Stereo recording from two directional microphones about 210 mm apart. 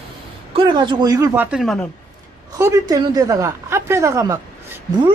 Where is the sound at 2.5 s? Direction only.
15° right (ahead or behind).